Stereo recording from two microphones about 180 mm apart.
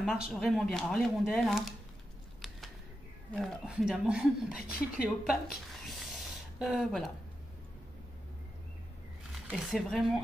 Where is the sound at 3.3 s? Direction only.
Centre (ahead or behind).